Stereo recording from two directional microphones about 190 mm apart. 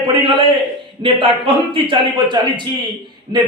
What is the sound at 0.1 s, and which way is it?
A man's voice, 25° right (ahead or behind).